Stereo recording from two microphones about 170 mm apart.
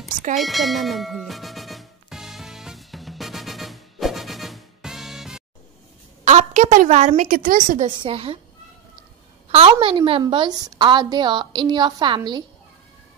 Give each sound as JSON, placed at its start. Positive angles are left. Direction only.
{"t": 0.4, "sound": "music", "side_deg": 0}
{"t": 6.2, "sound": "a woman's voice", "side_deg": -45}
{"t": 8.0, "sound": "speech", "side_deg": -35}
{"t": 9.5, "sound": "a woman's voice", "side_deg": -35}